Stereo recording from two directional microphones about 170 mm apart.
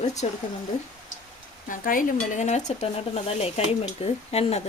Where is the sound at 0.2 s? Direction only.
40° left (ahead or behind).